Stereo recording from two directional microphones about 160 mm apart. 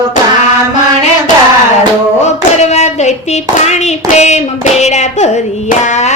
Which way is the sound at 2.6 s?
45° left (ahead or behind).